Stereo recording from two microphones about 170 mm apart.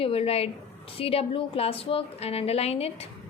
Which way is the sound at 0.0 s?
35° left (ahead or behind).